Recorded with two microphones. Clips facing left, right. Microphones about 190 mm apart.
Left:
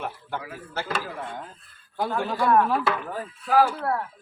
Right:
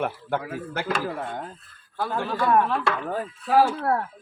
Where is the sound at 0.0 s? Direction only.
55° right (ahead or behind).